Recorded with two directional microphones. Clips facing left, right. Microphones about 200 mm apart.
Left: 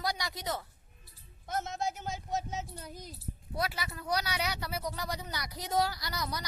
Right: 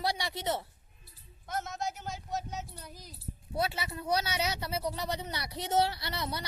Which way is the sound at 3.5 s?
25° right (ahead or behind).